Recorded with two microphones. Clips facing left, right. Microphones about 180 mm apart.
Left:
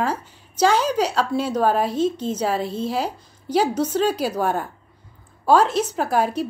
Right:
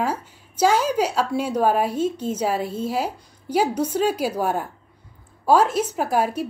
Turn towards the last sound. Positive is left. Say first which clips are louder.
# left 1 dB
turn(degrees=-10)  # may be behind; listen again after turning